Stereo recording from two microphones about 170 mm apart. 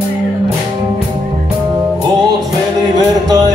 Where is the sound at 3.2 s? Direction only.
25° right (ahead or behind).